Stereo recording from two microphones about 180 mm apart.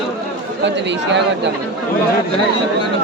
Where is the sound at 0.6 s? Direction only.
80° right.